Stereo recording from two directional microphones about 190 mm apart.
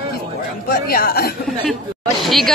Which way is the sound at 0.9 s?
55° left (ahead or behind).